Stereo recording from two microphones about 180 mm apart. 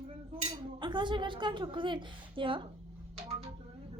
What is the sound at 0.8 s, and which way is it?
A woman's voice, 25° right (ahead or behind).